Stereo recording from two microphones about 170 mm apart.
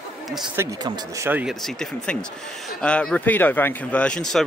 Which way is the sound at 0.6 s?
20° right (ahead or behind).